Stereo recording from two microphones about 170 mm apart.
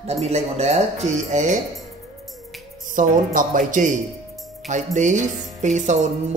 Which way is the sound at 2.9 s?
50° right (ahead or behind).